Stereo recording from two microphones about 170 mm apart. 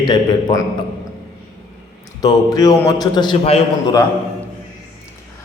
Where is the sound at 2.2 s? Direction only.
20° left (ahead or behind).